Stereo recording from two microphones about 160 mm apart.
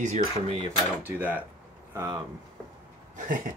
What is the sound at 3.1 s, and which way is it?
Speech, 55° right (ahead or behind).